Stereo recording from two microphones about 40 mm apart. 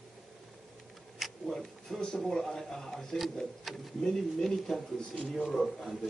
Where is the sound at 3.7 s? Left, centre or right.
Centre.